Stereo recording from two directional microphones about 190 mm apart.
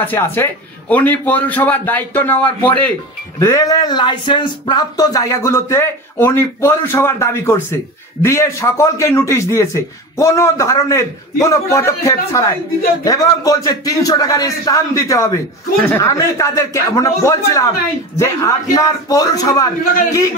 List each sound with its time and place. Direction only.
0.0 s a man's voice: 10° left (ahead or behind)